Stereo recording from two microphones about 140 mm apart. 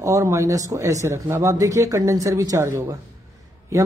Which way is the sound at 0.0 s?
20° right (ahead or behind).